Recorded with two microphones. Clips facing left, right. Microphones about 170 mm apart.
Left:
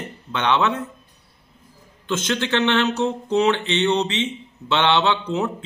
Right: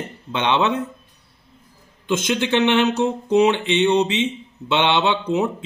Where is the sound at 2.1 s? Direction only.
15° right (ahead or behind).